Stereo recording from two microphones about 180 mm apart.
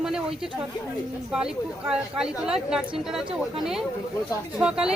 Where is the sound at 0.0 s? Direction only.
5° right (ahead or behind).